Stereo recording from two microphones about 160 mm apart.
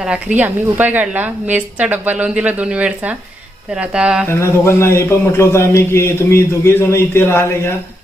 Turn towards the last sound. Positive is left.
turn(degrees=15)  # may be behind; listen again after turning